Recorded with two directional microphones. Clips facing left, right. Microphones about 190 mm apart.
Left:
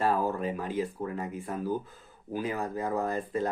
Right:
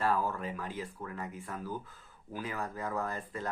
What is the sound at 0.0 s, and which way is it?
Speech, 20° left (ahead or behind).